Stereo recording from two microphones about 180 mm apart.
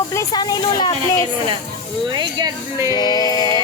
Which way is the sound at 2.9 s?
20° left (ahead or behind).